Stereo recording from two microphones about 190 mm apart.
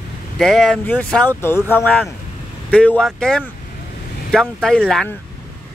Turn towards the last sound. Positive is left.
turn(degrees=0)  # may be behind; listen again after turning